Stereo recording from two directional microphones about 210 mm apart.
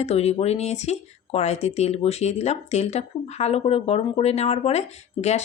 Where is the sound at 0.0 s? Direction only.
30° left (ahead or behind).